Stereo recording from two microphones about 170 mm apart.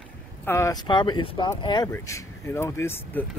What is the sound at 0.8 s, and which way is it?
Speech, 25° left (ahead or behind).